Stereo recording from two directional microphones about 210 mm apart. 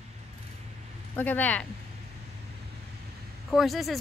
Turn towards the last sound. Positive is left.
turn(degrees=0)  # may be behind; listen again after turning